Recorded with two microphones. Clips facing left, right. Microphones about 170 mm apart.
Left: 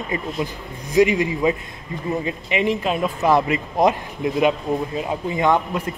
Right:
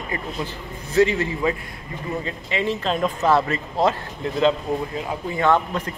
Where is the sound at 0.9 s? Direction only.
15° left (ahead or behind).